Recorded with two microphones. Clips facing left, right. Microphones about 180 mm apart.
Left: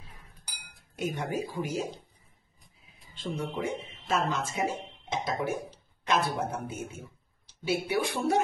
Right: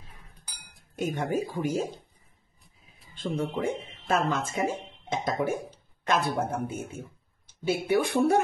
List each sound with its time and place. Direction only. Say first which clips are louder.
0.9 s speech: right 3 dB; 50° right (ahead or behind)
3.2 s speech: right 4 dB; 50° right (ahead or behind)